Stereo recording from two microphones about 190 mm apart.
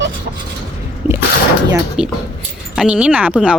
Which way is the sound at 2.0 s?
5° right (ahead or behind).